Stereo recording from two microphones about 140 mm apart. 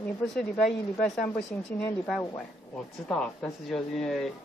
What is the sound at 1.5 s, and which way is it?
Speech, 15° left (ahead or behind).